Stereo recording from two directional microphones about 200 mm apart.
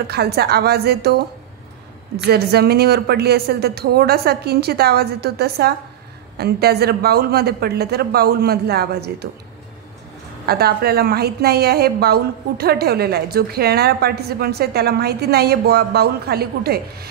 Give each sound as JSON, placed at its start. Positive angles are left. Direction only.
{"t": 0.0, "sound": "a woman's voice", "side_deg": -55}
{"t": 2.2, "sound": "a woman's voice", "side_deg": -55}
{"t": 10.4, "sound": "a woman's voice", "side_deg": -50}